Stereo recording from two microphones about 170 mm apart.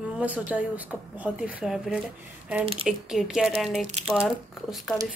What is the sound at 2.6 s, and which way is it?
Speech, 35° right (ahead or behind).